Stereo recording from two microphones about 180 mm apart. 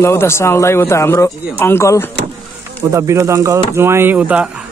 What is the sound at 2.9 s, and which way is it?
Speech, 15° right (ahead or behind).